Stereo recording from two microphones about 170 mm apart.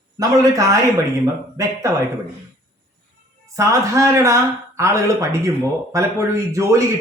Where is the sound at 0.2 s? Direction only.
20° right (ahead or behind).